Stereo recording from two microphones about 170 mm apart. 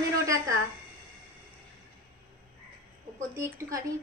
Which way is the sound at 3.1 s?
15° right (ahead or behind).